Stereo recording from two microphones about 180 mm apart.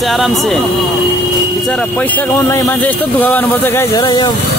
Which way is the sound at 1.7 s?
10° left (ahead or behind).